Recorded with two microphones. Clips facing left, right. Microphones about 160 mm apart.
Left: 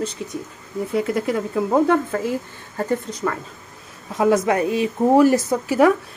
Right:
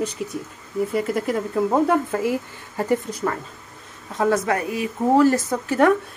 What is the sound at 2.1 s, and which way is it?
Speech, 10° right (ahead or behind).